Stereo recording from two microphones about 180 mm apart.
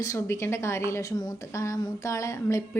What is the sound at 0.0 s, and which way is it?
A woman's voice, 15° left (ahead or behind).